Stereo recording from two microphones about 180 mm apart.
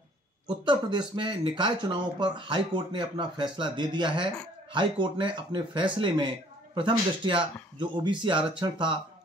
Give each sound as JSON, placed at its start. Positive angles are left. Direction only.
{"t": 0.7, "sound": "speech", "side_deg": -25}